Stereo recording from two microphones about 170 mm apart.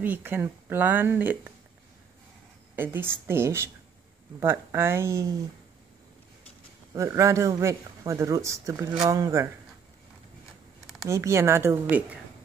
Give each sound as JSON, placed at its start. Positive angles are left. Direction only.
{"t": 0.0, "sound": "a man's voice", "side_deg": -10}
{"t": 2.7, "sound": "a man's voice", "side_deg": -10}
{"t": 6.9, "sound": "a man's voice", "side_deg": -15}
{"t": 11.1, "sound": "a man's voice", "side_deg": -15}